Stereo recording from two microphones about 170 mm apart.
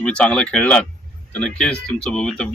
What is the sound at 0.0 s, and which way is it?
Speech, 5° left (ahead or behind).